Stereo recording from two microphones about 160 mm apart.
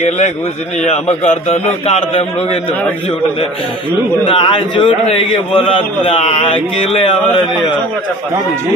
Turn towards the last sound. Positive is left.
turn(degrees=30)  # may be behind; listen again after turning